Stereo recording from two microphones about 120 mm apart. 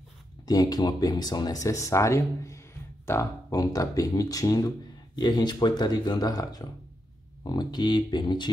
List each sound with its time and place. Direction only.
0.5 s speech: 30° left (ahead or behind)